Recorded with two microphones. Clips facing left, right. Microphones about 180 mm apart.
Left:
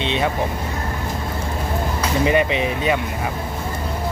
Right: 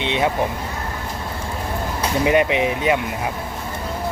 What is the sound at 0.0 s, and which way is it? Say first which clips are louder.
Vehicle: right 1 dB; 15° right (ahead or behind).